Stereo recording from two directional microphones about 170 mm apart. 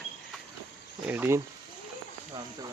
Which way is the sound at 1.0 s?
15° right (ahead or behind).